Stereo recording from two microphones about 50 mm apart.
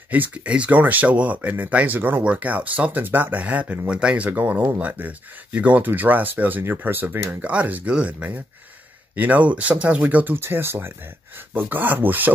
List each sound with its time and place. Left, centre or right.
0.1 s speech: right
2.0 s speech: right
2.2 s speech: right
4.7 s speech: right
7.4 s speech: right
10.3 s speech: right
11.3 s speech: right